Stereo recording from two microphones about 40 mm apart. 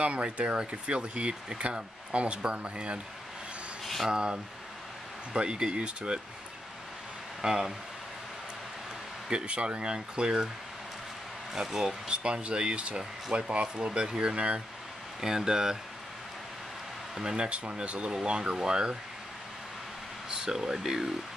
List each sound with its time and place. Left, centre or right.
0.0 s speech: right
3.8 s a sound: centre
4.1 s speech: right
7.4 s speech: centre
9.3 s speech: right
11.5 s speech: centre
12.1 s speech: right
15.1 s speech: centre
17.1 s speech: centre
17.5 s speech: right
20.2 s speech: centre